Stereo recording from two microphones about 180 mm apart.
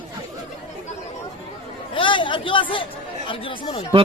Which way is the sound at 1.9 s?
25° left (ahead or behind).